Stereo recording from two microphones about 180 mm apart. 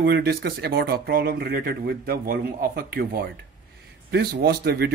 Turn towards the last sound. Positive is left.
turn(degrees=-60)  # may be behind; listen again after turning